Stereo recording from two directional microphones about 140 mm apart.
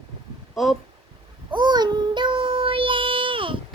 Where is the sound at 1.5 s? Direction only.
30° right (ahead or behind).